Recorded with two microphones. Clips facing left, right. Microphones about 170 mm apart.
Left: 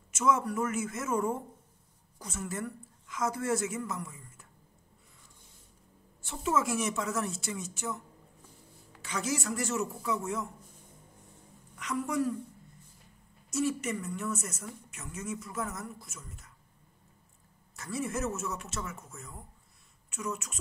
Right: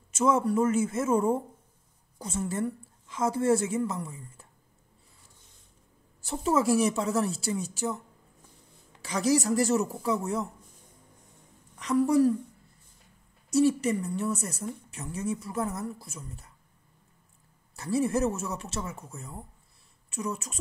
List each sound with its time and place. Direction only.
0.1 s a woman's voice: 30° right (ahead or behind)
6.2 s speech: 35° right (ahead or behind)
9.0 s speech: 35° right (ahead or behind)
11.8 s speech: 35° right (ahead or behind)
13.5 s speech: 35° right (ahead or behind)
17.7 s speech: 30° right (ahead or behind)